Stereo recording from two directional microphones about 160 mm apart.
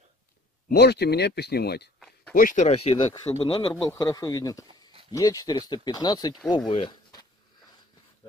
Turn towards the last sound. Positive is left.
turn(degrees=25)  # may be behind; listen again after turning